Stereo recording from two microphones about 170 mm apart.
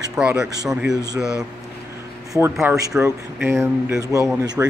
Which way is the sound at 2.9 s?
10° right (ahead or behind).